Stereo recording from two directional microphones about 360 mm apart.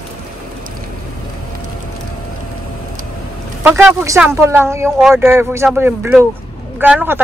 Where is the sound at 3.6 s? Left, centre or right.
Centre.